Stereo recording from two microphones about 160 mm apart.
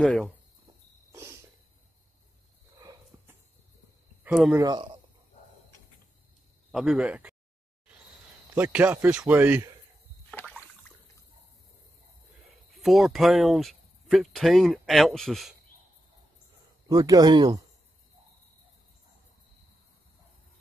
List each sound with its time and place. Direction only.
0.0 s speech: 5° left (ahead or behind)
1.1 s a sound: 15° right (ahead or behind)
2.8 s a sound: 25° right (ahead or behind)
4.2 s speech: 10° right (ahead or behind)
4.6 s speech: 25° right (ahead or behind)
6.7 s speech: 5° right (ahead or behind)
8.5 s a man's voice: 10° right (ahead or behind)
10.3 s a sound: 10° left (ahead or behind)
12.7 s speech: centre (ahead or behind)
16.9 s speech: 25° right (ahead or behind)